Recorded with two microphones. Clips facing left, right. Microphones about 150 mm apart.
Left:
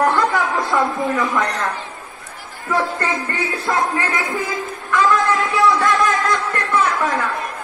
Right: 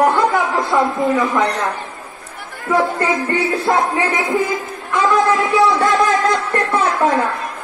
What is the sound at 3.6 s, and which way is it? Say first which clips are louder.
Speech: right 1 dB; 30° right (ahead or behind).